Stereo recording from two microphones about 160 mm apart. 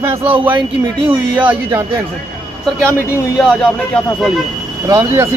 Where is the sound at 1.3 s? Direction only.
10° right (ahead or behind).